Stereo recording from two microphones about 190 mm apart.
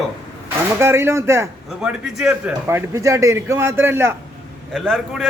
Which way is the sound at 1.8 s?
5° right (ahead or behind).